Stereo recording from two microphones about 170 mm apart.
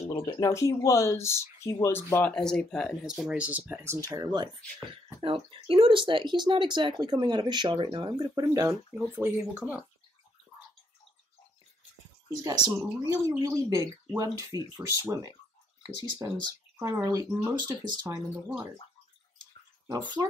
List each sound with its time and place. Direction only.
0.1 s speech: 15° left (ahead or behind); by 4.5 s 20° right (ahead or behind)
5.2 s a child's voice: 30° right (ahead or behind); by 9.8 s 10° right (ahead or behind)
12.3 s speech: 20° right (ahead or behind)
20.2 s speech: 20° right (ahead or behind)